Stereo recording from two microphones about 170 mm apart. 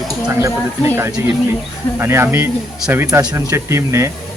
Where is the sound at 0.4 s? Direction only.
15° right (ahead or behind).